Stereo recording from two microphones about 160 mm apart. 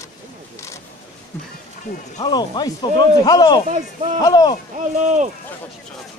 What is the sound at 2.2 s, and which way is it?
Speech, 25° left (ahead or behind).